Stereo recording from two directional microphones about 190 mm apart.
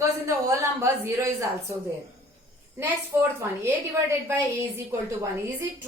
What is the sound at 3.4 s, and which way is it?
Speech, 15° right (ahead or behind).